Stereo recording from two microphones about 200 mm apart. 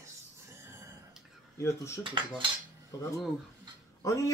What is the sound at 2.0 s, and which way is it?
Speech, 25° right (ahead or behind).